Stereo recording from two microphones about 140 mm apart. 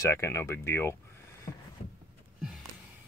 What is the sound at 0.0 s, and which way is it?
Speech, 20° left (ahead or behind).